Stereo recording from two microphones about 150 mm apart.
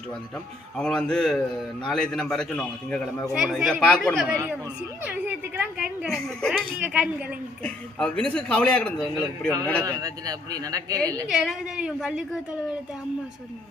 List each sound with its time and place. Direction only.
0.8 s a man's voice: 5° left (ahead or behind)
5.0 s a woman's voice: 10° right (ahead or behind)
6.1 s a man's voice: 5° left (ahead or behind)
6.7 s a woman's voice: 10° right (ahead or behind)
7.6 s a man's voice: 5° left (ahead or behind)
9.8 s speech: 25° right (ahead or behind)
11.3 s a man's voice: 5° right (ahead or behind)